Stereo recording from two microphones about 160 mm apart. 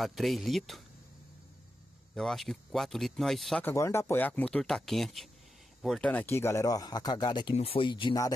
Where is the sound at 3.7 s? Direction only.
15° left (ahead or behind).